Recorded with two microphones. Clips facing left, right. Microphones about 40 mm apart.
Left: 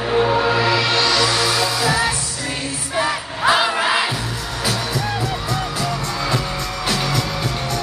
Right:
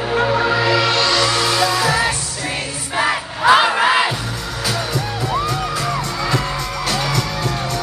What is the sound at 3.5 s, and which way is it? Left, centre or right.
Crowd, centre.